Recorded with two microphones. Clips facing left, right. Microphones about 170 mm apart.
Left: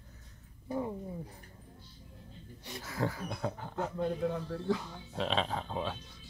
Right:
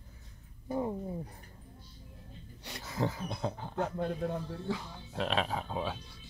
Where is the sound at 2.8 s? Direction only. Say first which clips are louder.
Right 1 dB; 20° right (ahead or behind).